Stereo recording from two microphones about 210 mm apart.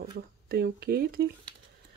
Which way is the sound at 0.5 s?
45° right (ahead or behind).